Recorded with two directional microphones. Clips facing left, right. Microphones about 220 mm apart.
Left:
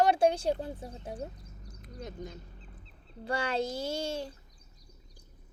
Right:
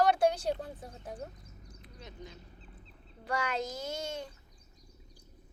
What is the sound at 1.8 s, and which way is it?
Speech, 45° left (ahead or behind).